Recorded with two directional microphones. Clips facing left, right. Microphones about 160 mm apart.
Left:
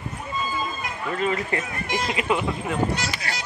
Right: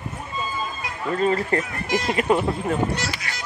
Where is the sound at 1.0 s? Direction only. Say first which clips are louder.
Right 4 dB; 35° right (ahead or behind).